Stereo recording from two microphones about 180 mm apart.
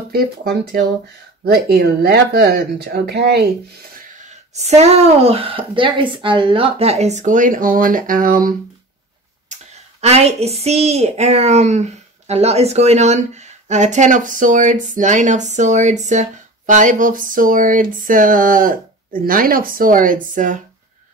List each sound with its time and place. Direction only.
0.1 s speech: 55° right (ahead or behind)
4.2 s speech: 40° right (ahead or behind)
9.5 s a woman's voice: 35° right (ahead or behind)